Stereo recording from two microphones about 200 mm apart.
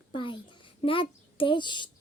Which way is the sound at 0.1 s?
25° left (ahead or behind).